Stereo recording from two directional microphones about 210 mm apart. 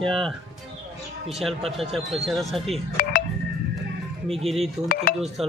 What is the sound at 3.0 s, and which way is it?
Music, 40° left (ahead or behind).